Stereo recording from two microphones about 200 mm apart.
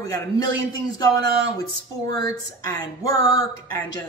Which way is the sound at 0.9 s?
20° left (ahead or behind).